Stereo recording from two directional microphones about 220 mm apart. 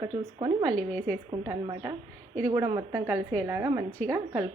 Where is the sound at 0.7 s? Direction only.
5° left (ahead or behind).